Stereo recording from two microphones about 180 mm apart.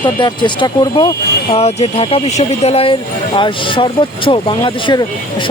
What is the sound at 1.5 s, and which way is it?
Speech, 35° left (ahead or behind).